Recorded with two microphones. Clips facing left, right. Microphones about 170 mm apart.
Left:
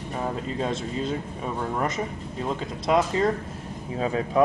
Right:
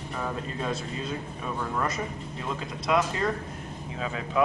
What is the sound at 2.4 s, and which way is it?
Speech, 25° left (ahead or behind).